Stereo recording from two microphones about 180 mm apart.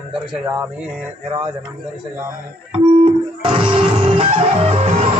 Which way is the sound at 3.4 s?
30° right (ahead or behind).